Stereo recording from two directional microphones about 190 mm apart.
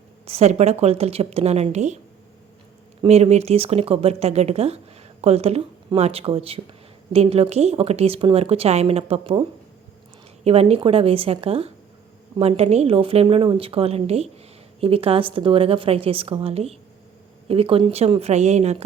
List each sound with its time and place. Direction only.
0.3 s speech: 35° right (ahead or behind)
3.0 s speech: 35° right (ahead or behind)
10.4 s a woman's voice: 30° right (ahead or behind)